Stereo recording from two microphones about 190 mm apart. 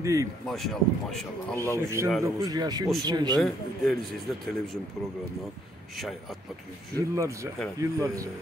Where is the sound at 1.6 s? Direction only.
15° right (ahead or behind).